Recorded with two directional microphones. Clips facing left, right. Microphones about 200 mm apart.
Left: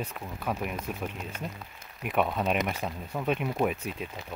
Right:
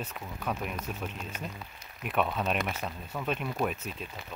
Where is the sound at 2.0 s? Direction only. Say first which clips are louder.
Left 2 dB; 10° left (ahead or behind).